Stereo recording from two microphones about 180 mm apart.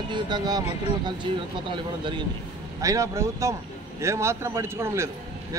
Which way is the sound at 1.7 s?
25° right (ahead or behind).